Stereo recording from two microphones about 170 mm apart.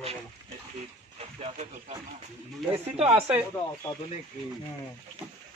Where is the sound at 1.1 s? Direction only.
40° right (ahead or behind).